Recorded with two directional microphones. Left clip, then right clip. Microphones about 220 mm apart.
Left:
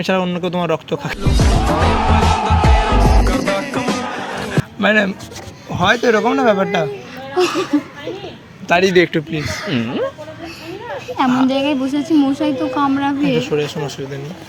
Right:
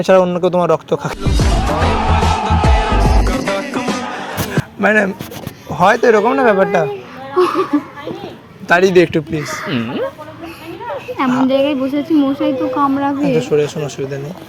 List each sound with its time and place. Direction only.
0.0 s speech: 10° right (ahead or behind)
1.2 s music: centre (ahead or behind)
4.8 s speech: 15° right (ahead or behind)
7.3 s speech: 30° left (ahead or behind)
8.6 s speech: 15° right (ahead or behind)
9.7 s speech: centre (ahead or behind)
11.4 s a woman's voice: 25° left (ahead or behind)
13.3 s speech: 10° right (ahead or behind)